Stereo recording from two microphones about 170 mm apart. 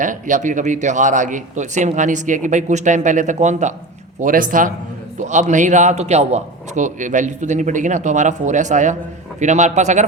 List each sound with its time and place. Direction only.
0.0 s speech: 50° right (ahead or behind)